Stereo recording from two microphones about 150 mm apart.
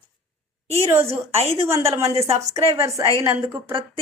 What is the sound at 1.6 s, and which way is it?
Speech, 20° right (ahead or behind).